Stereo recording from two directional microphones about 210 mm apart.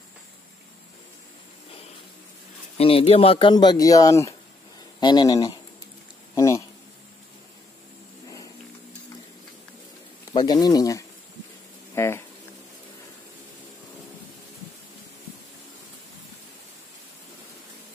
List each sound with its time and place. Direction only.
2.8 s speech: 25° left (ahead or behind)
10.3 s speech: 20° left (ahead or behind)
11.9 s a sound: 10° left (ahead or behind)